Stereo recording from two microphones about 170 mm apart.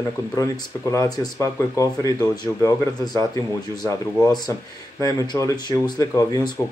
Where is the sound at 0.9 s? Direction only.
20° left (ahead or behind).